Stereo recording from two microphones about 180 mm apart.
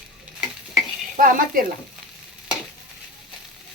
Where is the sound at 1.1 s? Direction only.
50° right (ahead or behind).